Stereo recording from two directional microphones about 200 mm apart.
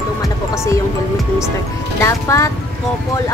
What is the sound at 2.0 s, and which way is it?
Speech, 15° left (ahead or behind).